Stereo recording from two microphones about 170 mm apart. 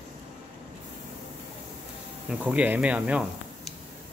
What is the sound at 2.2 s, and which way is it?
Speech, 10° right (ahead or behind).